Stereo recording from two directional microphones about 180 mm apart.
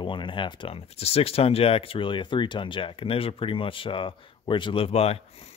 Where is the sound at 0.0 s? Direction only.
25° left (ahead or behind).